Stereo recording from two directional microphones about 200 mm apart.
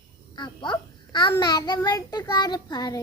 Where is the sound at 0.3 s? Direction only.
25° left (ahead or behind).